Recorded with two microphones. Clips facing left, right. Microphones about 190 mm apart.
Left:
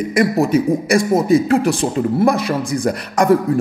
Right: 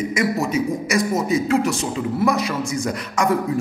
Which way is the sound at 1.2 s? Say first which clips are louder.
Left 5 dB; 55° left (ahead or behind).